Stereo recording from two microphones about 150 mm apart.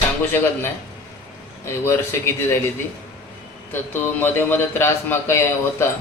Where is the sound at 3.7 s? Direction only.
15° left (ahead or behind).